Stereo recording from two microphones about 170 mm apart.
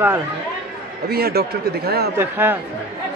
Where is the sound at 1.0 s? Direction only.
65° right (ahead or behind).